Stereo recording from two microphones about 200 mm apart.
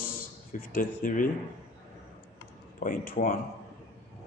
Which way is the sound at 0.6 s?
45° left (ahead or behind).